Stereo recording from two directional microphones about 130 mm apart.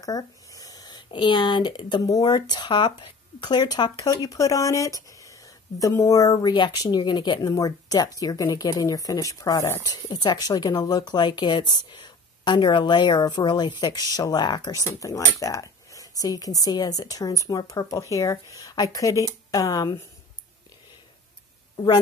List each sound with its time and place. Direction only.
0.0 s speech: 25° left (ahead or behind)
21.7 s a woman's voice: 35° left (ahead or behind)